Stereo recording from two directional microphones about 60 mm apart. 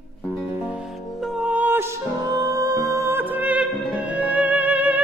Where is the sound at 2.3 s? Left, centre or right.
Right.